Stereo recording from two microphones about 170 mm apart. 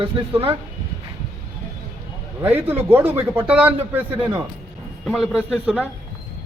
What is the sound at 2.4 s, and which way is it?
A man's voice, 10° right (ahead or behind).